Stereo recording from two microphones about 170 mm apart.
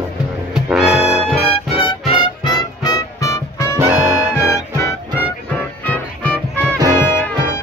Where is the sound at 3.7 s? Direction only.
15° right (ahead or behind).